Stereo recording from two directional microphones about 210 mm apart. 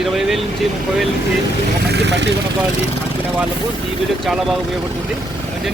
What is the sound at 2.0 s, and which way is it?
Speech, 55° right (ahead or behind).